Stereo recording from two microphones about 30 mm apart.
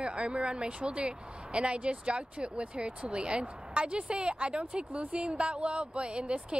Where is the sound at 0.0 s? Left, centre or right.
Right.